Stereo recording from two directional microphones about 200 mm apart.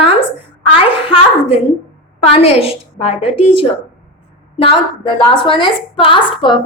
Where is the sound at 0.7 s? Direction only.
30° left (ahead or behind).